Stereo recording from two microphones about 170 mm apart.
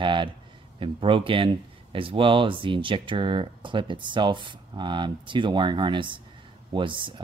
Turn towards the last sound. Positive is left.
turn(degrees=-30)  # may be behind; listen again after turning